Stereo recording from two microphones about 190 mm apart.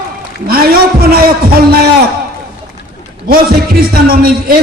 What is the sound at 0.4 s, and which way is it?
A man's voice, 50° right (ahead or behind).